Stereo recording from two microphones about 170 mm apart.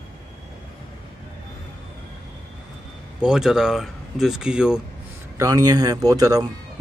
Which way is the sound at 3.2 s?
5° right (ahead or behind).